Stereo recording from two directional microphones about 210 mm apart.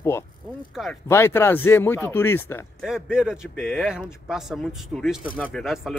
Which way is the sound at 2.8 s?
5° right (ahead or behind).